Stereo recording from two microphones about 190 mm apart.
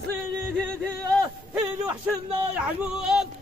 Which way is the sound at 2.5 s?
5° right (ahead or behind).